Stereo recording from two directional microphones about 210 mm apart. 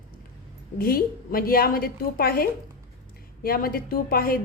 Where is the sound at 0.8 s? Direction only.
45° left (ahead or behind).